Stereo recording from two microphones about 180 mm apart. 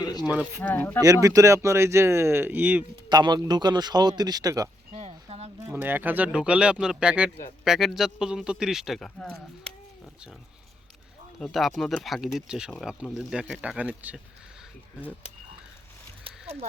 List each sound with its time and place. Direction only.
0.0 s a sound: 20° left (ahead or behind)
0.3 s speech: 10° right (ahead or behind)
0.6 s speech: 10° left (ahead or behind)
1.0 s speech: 20° right (ahead or behind)
3.1 s a man's voice: 25° right (ahead or behind)
4.9 s a sound: 35° right (ahead or behind)
5.7 s speech: 10° right (ahead or behind); by 9.7 s 5° left (ahead or behind)
11.3 s speech: centre (ahead or behind)
16.2 s horse: 35° right (ahead or behind)